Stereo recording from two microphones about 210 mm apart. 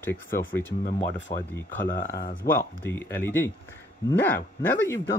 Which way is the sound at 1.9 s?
40° left (ahead or behind).